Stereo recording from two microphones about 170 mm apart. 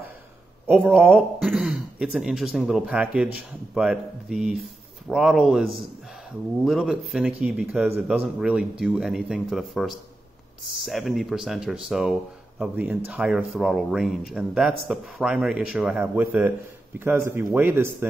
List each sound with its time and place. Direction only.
0.7 s a man's voice: 10° right (ahead or behind)